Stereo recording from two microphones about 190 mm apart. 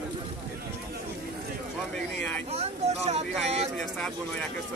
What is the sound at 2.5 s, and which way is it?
Speech, 35° right (ahead or behind).